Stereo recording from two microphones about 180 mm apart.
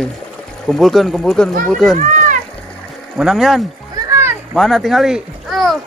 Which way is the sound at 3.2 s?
Centre (ahead or behind).